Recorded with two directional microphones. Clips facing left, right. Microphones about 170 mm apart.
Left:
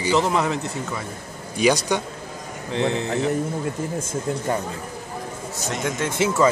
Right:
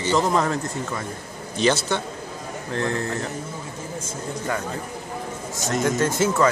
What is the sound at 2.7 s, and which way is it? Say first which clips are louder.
Speech: left 3 dB; 90° left.